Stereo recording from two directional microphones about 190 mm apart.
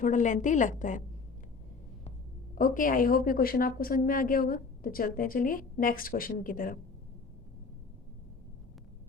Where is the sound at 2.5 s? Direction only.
45° left (ahead or behind).